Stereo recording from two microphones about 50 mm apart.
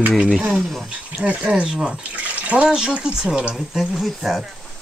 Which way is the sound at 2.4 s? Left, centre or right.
Right.